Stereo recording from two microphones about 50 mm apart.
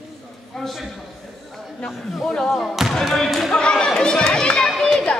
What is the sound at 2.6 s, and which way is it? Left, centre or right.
Speech, centre.